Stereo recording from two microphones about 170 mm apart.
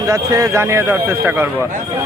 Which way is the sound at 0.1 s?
20° right (ahead or behind).